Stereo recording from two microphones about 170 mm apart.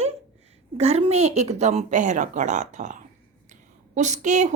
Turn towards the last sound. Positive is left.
turn(degrees=-45)  # may be behind; listen again after turning